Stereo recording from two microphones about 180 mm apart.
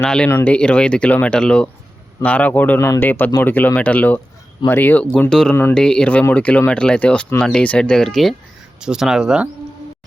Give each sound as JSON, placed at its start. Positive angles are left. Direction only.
{"t": 0.0, "sound": "speech", "side_deg": 5}